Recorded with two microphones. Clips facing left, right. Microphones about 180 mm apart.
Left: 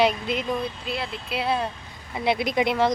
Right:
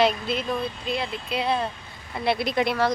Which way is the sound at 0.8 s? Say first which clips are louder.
Right 2 dB; 5° left (ahead or behind).